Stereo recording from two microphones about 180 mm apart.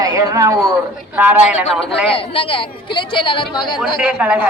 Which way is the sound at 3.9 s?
5° right (ahead or behind).